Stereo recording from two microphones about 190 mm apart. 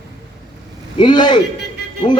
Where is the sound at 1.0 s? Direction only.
25° left (ahead or behind).